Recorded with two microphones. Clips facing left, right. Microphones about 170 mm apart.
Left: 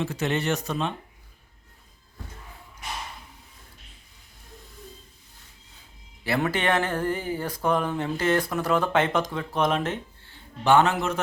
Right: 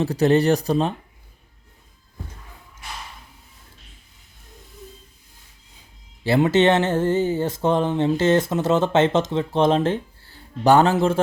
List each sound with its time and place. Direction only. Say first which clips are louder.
0.0 s speech: right 9 dB; 35° right (ahead or behind)
6.2 s speech: right 8 dB; 25° right (ahead or behind)